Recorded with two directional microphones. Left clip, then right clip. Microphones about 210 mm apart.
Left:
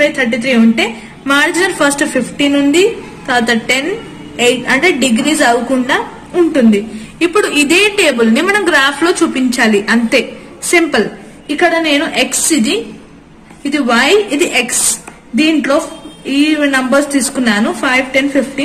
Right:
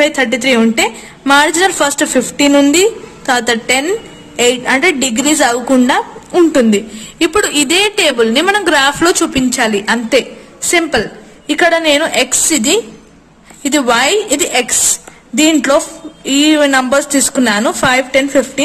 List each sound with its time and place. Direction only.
0.0 s a woman's voice: 60° right (ahead or behind)